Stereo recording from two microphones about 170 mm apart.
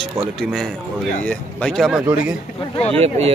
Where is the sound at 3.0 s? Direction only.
35° right (ahead or behind).